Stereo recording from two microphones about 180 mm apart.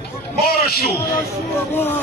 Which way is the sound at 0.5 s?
60° left (ahead or behind).